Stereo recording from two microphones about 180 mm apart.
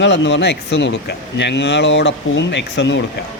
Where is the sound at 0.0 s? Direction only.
90° left.